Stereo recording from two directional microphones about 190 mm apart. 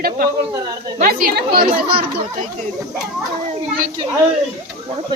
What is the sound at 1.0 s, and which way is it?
Speech, 50° right (ahead or behind).